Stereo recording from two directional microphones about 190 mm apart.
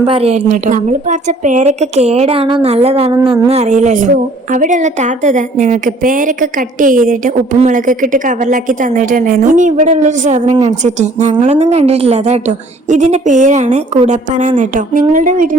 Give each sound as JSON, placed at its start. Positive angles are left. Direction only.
{"t": 0.0, "sound": "a woman's voice", "side_deg": -30}